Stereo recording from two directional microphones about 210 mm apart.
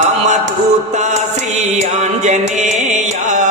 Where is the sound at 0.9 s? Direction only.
35° right (ahead or behind).